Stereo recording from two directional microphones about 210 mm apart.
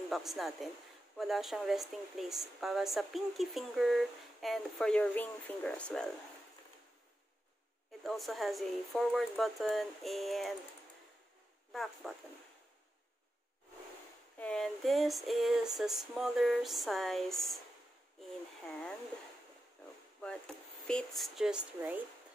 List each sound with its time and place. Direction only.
0.1 s speech: centre (ahead or behind)
8.0 s speech: centre (ahead or behind)
11.7 s speech: centre (ahead or behind)
14.4 s speech: 5° left (ahead or behind)
20.8 s speech: centre (ahead or behind)